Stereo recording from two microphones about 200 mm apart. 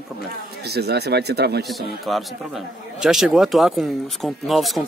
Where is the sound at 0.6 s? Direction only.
55° right (ahead or behind).